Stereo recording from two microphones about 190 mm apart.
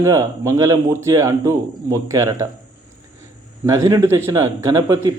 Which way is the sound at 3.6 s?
15° right (ahead or behind).